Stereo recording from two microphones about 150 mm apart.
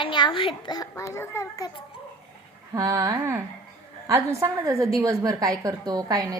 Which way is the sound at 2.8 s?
25° right (ahead or behind).